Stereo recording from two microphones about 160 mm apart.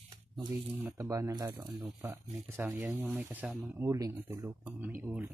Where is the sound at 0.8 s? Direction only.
20° right (ahead or behind).